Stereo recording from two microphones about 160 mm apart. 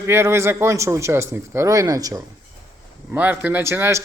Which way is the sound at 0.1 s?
15° right (ahead or behind).